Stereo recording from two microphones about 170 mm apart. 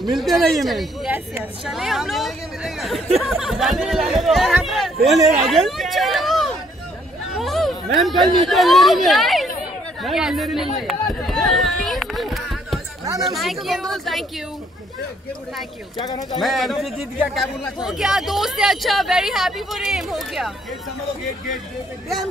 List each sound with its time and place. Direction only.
0.1 s speech: centre (ahead or behind)
5.4 s chatter: centre (ahead or behind)
7.3 s speech: centre (ahead or behind)
11.4 s a sound: centre (ahead or behind)
13.2 s speech: centre (ahead or behind)
16.0 s speech: 25° left (ahead or behind)
16.3 s speech: centre (ahead or behind)